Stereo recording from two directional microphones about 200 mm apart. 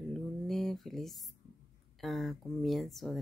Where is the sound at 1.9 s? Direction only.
Centre (ahead or behind).